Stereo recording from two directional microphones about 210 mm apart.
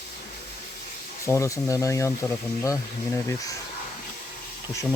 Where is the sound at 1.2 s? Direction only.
15° left (ahead or behind).